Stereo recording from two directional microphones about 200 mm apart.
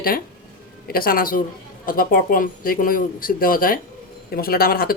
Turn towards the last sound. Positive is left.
turn(degrees=45)  # may be behind; listen again after turning